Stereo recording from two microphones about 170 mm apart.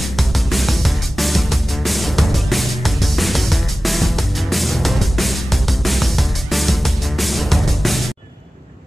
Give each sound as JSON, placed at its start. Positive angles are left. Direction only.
{"t": 0.2, "sound": "music", "side_deg": 0}